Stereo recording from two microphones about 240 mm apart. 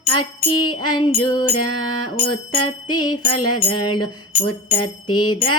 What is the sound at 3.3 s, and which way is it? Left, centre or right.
Music, left.